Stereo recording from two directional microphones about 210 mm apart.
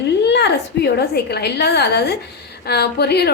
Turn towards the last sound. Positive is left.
turn(degrees=50)  # may be behind; listen again after turning